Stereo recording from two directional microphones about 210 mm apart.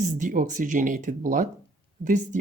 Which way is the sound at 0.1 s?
35° right (ahead or behind).